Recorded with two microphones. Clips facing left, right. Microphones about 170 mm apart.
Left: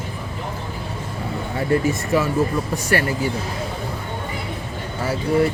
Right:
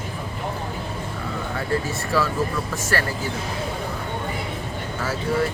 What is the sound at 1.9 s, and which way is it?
Speech, 20° left (ahead or behind).